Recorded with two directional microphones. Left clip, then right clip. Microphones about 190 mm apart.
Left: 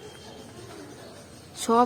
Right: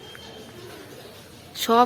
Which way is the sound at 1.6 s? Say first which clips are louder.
Right 3 dB; 10° left (ahead or behind).